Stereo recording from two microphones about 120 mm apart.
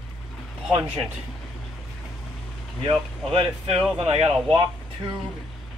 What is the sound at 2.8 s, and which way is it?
Speech, 50° right (ahead or behind).